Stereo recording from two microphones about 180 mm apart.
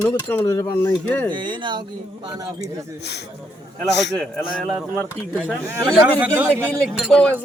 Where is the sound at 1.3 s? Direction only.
25° right (ahead or behind).